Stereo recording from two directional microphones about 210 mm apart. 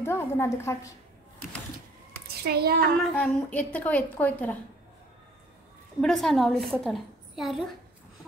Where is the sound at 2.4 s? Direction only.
50° right (ahead or behind).